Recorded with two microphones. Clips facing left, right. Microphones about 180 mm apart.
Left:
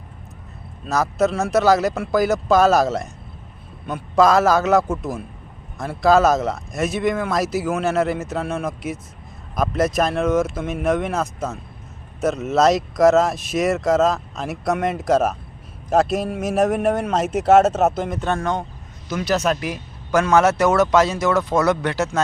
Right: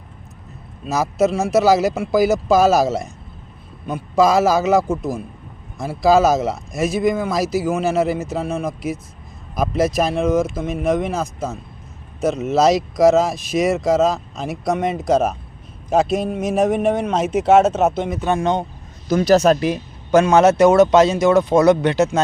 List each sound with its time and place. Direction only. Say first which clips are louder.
1.2 s speech: right 3 dB; centre (ahead or behind)
18.3 s speech: right 5 dB; 15° right (ahead or behind)
19.0 s speech: right 7 dB; 35° right (ahead or behind); by 22.2 s 20° right (ahead or behind)